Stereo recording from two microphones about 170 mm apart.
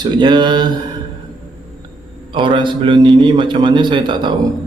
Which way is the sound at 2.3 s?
30° right (ahead or behind).